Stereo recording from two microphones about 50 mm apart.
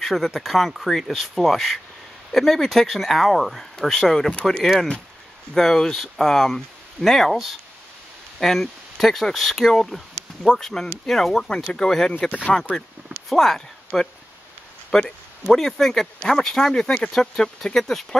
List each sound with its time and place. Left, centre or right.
0.0 s speech: centre
5.5 s speech: centre
12.1 s speech: left
13.3 s speech: centre